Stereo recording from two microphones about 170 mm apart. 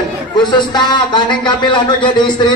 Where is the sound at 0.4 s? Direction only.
25° left (ahead or behind).